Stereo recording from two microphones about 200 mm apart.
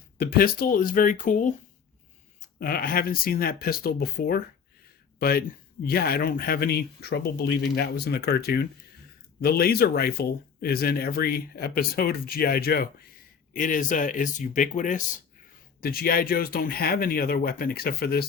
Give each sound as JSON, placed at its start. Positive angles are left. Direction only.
{"t": 0.2, "sound": "speech", "side_deg": 45}
{"t": 2.6, "sound": "speech", "side_deg": 45}